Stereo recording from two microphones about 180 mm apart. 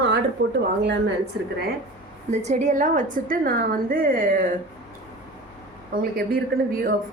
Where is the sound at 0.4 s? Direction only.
80° right.